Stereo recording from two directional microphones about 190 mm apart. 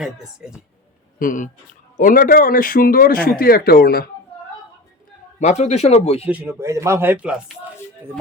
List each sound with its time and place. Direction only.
0.0 s a woman's voice: 5° right (ahead or behind)
1.2 s a man's voice: 45° left (ahead or behind)
5.4 s speech: 35° left (ahead or behind)
6.2 s a man's voice: 10° right (ahead or behind)